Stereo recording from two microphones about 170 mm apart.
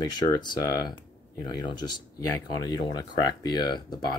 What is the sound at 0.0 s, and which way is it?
Speech, 25° left (ahead or behind).